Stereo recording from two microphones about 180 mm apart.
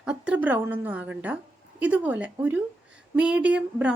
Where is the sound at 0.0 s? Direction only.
5° right (ahead or behind).